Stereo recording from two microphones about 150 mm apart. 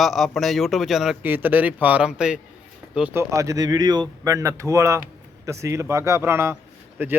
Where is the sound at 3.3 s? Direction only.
20° right (ahead or behind).